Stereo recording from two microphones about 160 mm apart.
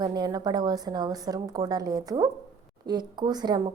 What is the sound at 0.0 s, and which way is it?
A woman's voice, 25° right (ahead or behind).